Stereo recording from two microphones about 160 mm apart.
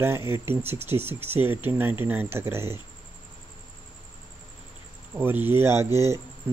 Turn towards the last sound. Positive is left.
turn(degrees=-15)  # may be behind; listen again after turning